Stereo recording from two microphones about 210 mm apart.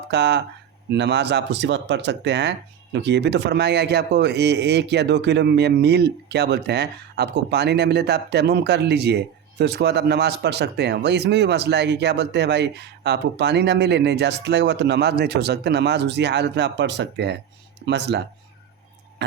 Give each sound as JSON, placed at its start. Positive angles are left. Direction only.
{"t": 0.1, "sound": "speech", "side_deg": -55}